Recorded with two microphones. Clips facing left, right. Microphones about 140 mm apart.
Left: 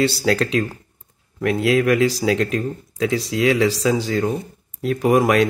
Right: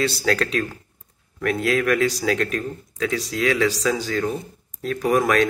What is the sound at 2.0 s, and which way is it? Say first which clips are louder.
Speech: left 3 dB; centre (ahead or behind).